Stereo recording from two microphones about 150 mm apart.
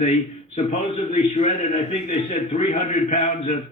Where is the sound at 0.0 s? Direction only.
50° left (ahead or behind).